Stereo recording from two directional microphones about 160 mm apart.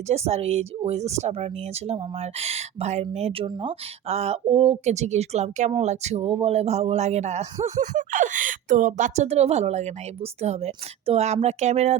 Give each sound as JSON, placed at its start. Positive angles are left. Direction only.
{"t": 0.1, "sound": "a man's voice", "side_deg": -40}